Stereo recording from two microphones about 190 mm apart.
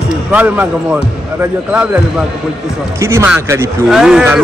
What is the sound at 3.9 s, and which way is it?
Speech, 5° right (ahead or behind).